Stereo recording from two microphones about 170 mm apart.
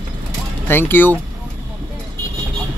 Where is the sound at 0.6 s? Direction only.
15° left (ahead or behind).